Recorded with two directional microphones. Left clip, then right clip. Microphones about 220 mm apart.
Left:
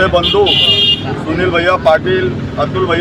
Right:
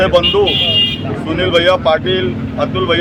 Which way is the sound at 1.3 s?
15° right (ahead or behind).